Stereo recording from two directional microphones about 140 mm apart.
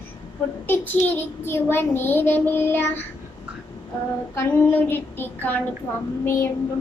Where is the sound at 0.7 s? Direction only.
15° left (ahead or behind).